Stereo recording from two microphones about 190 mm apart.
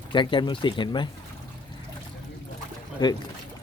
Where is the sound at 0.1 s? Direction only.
25° left (ahead or behind).